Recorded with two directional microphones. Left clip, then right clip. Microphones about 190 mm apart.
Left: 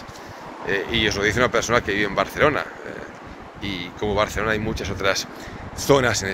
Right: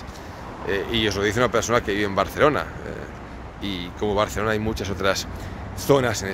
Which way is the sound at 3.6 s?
25° right (ahead or behind).